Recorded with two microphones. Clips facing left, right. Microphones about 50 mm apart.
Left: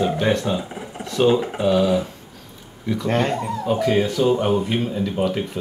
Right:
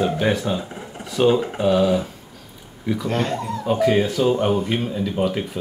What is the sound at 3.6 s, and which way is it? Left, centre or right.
Speech, centre.